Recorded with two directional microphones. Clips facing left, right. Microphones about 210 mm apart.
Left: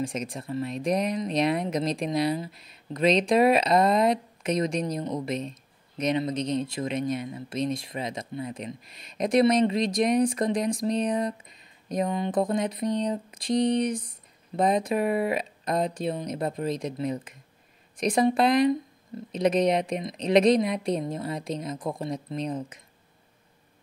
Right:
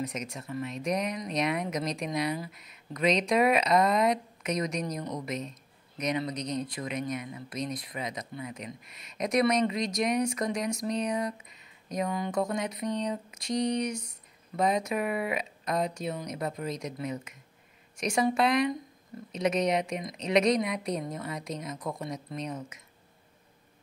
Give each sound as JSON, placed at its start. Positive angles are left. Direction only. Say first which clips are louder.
{"t": 0.0, "sound": "speech", "louder": "left 4 dB", "side_deg": 30}